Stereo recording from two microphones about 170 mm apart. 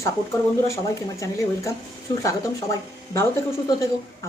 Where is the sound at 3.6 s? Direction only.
20° left (ahead or behind).